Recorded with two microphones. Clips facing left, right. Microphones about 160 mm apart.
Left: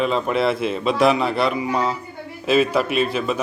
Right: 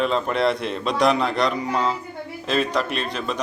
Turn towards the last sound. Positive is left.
turn(degrees=5)  # may be behind; listen again after turning